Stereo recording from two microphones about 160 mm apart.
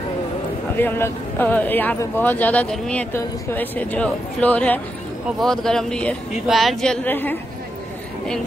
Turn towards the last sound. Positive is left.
turn(degrees=10)  # may be behind; listen again after turning